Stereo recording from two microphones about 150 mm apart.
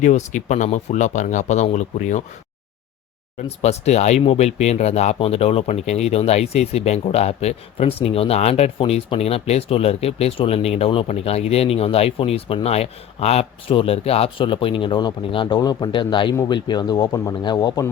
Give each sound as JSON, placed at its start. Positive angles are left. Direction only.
{"t": 0.0, "sound": "speech", "side_deg": 50}
{"t": 3.6, "sound": "speech", "side_deg": 45}